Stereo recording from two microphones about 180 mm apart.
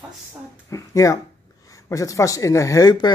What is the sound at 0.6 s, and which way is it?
Speech, 20° left (ahead or behind).